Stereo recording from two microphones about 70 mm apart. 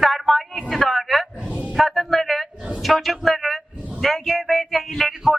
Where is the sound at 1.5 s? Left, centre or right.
Centre.